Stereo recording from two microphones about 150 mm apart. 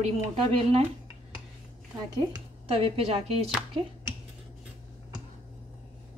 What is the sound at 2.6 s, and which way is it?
Speech, 40° right (ahead or behind).